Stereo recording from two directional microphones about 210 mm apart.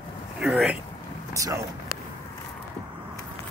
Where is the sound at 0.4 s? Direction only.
Centre (ahead or behind).